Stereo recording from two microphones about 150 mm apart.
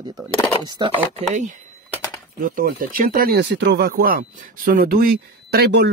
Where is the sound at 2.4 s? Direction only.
65° right (ahead or behind).